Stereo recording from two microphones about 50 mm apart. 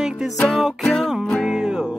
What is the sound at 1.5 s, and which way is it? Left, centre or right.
Music, centre.